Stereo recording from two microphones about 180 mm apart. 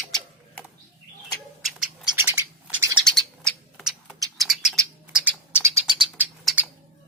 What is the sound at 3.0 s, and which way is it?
Bird, 5° left (ahead or behind).